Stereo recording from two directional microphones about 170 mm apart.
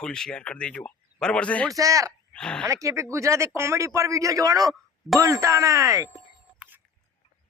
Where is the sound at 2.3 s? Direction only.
5° left (ahead or behind).